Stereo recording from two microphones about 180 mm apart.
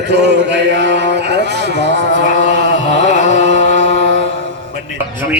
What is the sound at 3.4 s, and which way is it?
Chant, 80° right.